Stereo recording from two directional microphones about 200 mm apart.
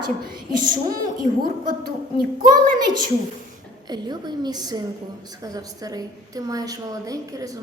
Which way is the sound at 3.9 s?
20° right (ahead or behind).